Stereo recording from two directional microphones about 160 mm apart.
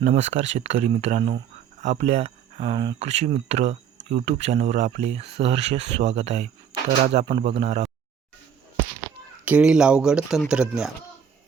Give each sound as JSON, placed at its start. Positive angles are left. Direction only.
{"t": 0.0, "sound": "speech", "side_deg": -45}
{"t": 9.4, "sound": "speech", "side_deg": -10}